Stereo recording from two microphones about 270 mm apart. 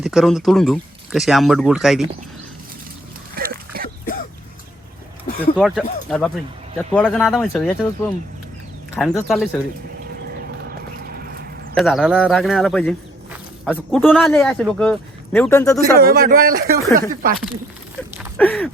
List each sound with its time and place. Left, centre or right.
0.0 s speech: centre
3.3 s a sound: right
5.5 s speech: centre
10.9 s vehicle: right
11.7 s speech: centre
16.0 s speech: right
18.3 s speech: centre